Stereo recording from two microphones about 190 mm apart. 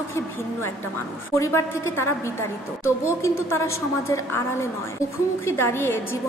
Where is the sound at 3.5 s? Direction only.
15° left (ahead or behind).